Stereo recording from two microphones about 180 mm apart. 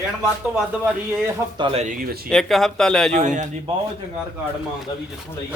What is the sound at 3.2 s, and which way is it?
Speech, 45° right (ahead or behind).